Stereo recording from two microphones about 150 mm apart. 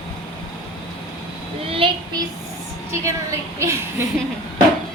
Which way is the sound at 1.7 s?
35° right (ahead or behind).